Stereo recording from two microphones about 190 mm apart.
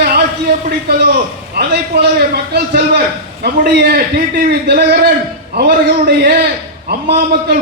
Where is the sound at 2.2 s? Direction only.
55° right (ahead or behind).